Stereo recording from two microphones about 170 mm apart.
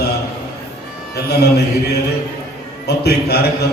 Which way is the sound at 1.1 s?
70° left (ahead or behind).